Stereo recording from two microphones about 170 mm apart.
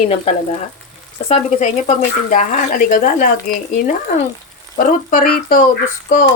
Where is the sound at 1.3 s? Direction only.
40° left (ahead or behind).